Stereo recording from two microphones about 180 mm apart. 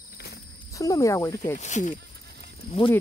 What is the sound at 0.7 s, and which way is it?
Speech, 15° left (ahead or behind).